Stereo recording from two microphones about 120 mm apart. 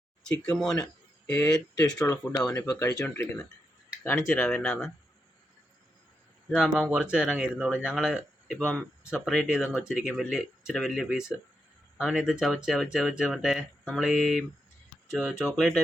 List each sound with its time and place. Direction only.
0.3 s speech: 5° left (ahead or behind)
1.5 s speech: 30° left (ahead or behind)
4.4 s speech: centre (ahead or behind)
6.5 s speech: 5° right (ahead or behind)